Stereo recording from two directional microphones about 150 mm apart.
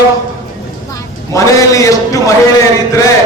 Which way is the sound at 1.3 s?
20° left (ahead or behind).